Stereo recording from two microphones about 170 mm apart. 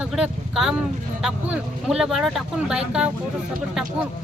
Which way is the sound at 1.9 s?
5° right (ahead or behind).